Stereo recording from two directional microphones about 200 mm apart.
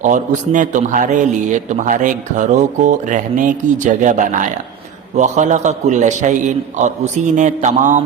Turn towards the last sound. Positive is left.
turn(degrees=-40)  # may be behind; listen again after turning